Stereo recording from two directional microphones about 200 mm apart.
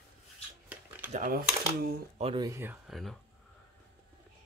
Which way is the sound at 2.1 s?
30° right (ahead or behind).